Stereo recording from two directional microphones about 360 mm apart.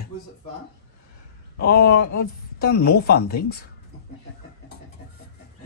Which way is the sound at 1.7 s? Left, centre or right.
Left.